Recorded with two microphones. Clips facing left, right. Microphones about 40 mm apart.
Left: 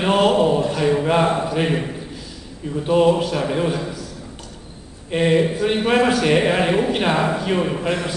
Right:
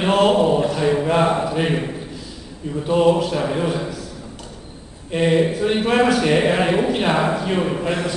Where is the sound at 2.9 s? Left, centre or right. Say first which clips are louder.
Even; centre.